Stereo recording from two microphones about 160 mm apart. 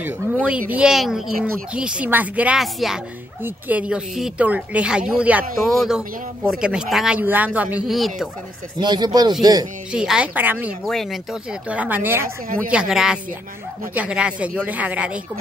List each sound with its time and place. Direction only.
0.0 s speech: 10° right (ahead or behind)
8.7 s speech: 25° right (ahead or behind)
9.9 s speech: 5° right (ahead or behind)
10.9 s speech: centre (ahead or behind)
11.7 s speech: 10° right (ahead or behind)